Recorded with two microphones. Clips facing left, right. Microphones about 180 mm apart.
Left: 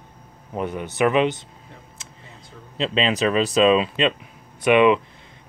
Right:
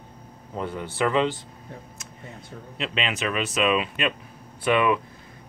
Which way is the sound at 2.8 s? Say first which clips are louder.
Left 7 dB; 30° left (ahead or behind).